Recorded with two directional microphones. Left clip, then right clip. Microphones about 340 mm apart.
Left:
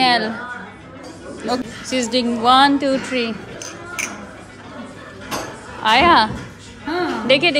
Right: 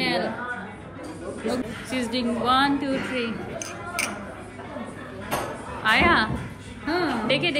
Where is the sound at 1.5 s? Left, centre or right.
Centre.